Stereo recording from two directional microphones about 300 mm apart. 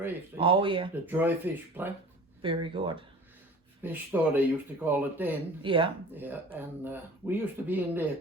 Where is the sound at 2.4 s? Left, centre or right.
Centre.